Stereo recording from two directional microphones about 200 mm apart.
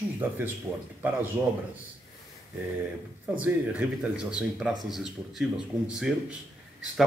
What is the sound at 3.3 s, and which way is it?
A man's voice, 5° right (ahead or behind).